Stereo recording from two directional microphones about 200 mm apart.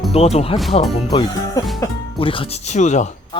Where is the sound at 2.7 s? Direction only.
35° left (ahead or behind).